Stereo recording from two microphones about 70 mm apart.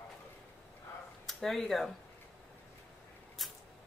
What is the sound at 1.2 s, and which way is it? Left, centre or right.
Speech, centre.